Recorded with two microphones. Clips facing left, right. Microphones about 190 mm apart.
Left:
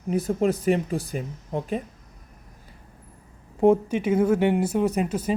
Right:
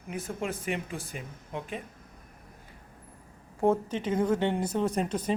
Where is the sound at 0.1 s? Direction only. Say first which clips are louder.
Left 11 dB; 35° left (ahead or behind).